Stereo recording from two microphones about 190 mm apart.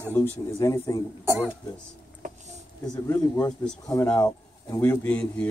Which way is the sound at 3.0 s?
15° left (ahead or behind).